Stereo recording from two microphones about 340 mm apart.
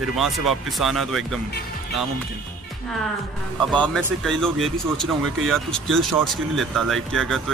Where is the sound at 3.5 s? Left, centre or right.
Centre.